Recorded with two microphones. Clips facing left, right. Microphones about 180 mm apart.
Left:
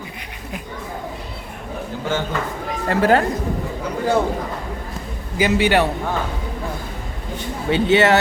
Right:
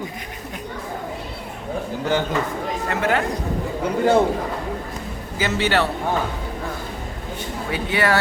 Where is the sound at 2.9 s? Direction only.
35° left (ahead or behind).